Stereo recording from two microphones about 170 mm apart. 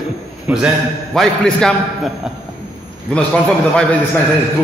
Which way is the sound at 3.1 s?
5° left (ahead or behind).